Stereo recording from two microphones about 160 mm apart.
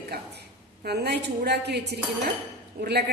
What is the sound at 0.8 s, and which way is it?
A woman's voice, 85° right.